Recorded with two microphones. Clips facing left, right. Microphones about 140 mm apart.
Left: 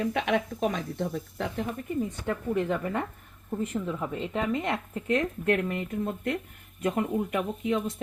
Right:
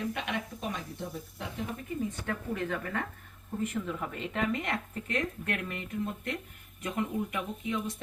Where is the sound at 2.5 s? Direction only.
25° left (ahead or behind).